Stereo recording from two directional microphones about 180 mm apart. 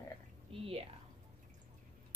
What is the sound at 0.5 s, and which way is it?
Speech, 30° right (ahead or behind).